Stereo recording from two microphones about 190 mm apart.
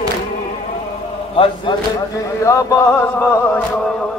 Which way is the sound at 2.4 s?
15° left (ahead or behind).